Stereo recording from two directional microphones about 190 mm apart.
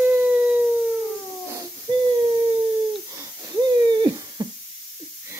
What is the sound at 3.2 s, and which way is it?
Wheeze, 20° right (ahead or behind).